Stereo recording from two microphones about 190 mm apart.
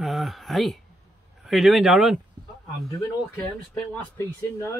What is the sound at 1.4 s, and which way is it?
Speech, centre (ahead or behind).